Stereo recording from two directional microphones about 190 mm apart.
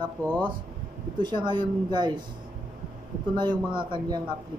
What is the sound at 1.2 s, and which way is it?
Speech, 25° right (ahead or behind).